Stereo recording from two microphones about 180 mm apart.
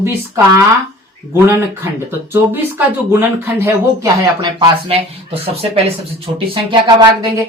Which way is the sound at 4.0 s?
25° right (ahead or behind).